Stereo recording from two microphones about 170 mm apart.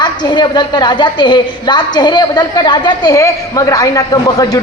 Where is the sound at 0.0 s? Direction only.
25° left (ahead or behind).